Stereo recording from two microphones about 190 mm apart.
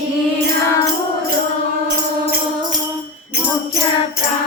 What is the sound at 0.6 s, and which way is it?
Music, 15° left (ahead or behind).